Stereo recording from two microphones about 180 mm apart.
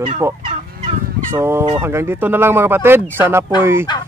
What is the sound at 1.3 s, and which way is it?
Speech, 15° right (ahead or behind).